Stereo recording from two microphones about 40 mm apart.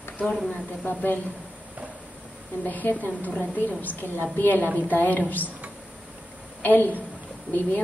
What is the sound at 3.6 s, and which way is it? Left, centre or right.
A woman's voice, left.